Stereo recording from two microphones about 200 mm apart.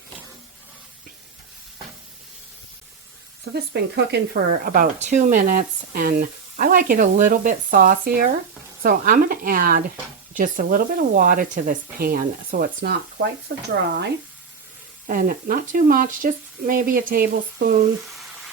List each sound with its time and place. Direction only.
3.5 s speech: 55° right (ahead or behind)
4.6 s speech: 45° right (ahead or behind)
13.7 s speech: 55° right (ahead or behind)
15.0 s speech: 45° right (ahead or behind)
18.1 s sizzle: centre (ahead or behind)